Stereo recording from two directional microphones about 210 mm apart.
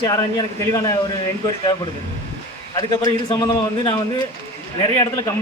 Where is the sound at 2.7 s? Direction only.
20° left (ahead or behind).